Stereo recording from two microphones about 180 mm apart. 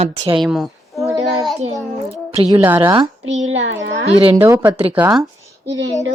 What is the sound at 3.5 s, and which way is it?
Speech, 90° right.